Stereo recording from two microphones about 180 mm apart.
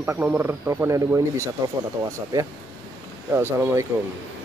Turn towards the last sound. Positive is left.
turn(degrees=-10)  # may be behind; listen again after turning